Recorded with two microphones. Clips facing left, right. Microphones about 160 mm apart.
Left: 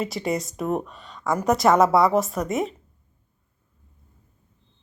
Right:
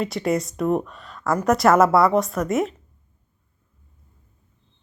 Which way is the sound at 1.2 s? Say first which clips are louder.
Right 2 dB; 20° left (ahead or behind).